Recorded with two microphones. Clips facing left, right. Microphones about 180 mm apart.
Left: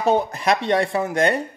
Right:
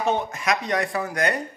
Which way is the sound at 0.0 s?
35° left (ahead or behind).